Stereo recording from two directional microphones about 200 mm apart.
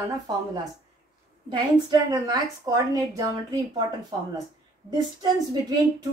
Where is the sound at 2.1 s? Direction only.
20° right (ahead or behind).